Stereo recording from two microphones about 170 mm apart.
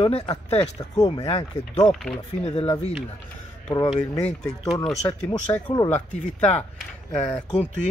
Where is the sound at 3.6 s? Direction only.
25° left (ahead or behind).